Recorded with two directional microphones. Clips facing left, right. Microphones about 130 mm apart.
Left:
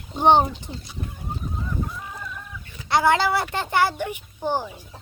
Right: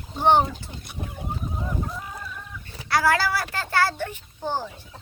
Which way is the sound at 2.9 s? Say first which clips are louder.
Left 3 dB; 20° left (ahead or behind).